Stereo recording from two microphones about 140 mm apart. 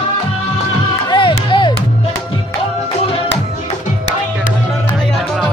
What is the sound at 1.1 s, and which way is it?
Music, 35° left (ahead or behind).